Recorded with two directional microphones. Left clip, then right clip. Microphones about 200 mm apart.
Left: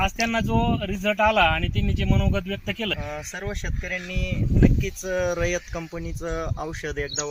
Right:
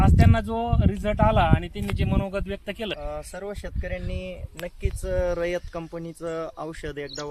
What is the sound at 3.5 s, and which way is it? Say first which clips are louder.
Speech: left 5 dB; 25° right (ahead or behind).